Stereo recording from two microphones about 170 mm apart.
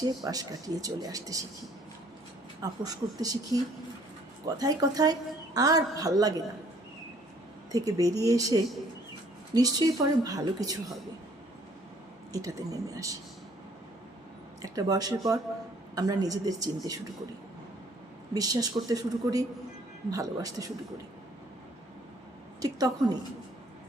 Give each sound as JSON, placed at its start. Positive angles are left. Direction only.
{"t": 0.3, "sound": "speech", "side_deg": -20}
{"t": 2.6, "sound": "speech", "side_deg": -20}
{"t": 7.7, "sound": "speech", "side_deg": -20}
{"t": 12.3, "sound": "speech", "side_deg": -20}
{"t": 14.6, "sound": "speech", "side_deg": -20}
{"t": 18.3, "sound": "speech", "side_deg": -20}
{"t": 22.6, "sound": "speech", "side_deg": -25}